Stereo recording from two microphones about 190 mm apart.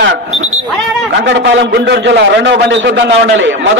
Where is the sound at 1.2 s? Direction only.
70° right (ahead or behind).